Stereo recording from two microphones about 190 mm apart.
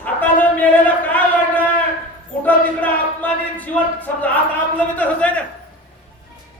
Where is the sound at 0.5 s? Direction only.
10° left (ahead or behind).